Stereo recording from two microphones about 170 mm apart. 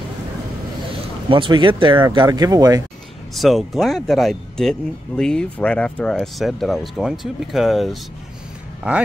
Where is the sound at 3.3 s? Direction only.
Centre (ahead or behind).